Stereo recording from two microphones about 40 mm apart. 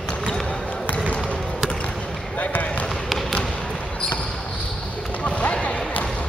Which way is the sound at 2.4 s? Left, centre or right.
Left.